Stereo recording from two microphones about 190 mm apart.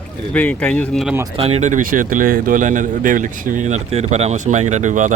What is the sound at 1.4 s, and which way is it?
Speech, 30° right (ahead or behind).